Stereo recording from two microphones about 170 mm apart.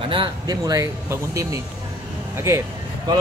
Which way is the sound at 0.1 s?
25° right (ahead or behind).